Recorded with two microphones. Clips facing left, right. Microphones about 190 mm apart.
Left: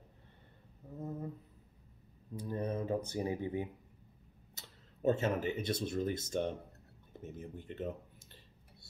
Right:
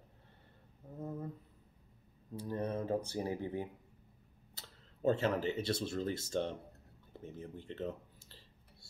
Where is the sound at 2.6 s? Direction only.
20° left (ahead or behind).